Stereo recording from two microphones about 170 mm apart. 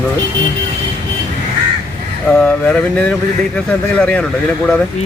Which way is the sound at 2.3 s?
5° left (ahead or behind).